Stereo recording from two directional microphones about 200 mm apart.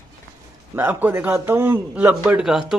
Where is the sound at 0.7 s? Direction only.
10° right (ahead or behind).